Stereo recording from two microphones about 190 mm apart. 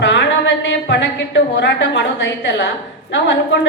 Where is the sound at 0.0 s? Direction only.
70° left (ahead or behind).